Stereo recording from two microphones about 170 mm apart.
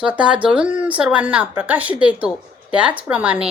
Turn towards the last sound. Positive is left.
turn(degrees=-10)  # may be behind; listen again after turning